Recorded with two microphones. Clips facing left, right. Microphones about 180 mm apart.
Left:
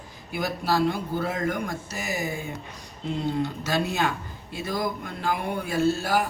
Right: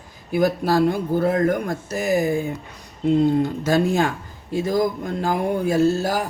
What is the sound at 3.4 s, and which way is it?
Speech, 45° right (ahead or behind).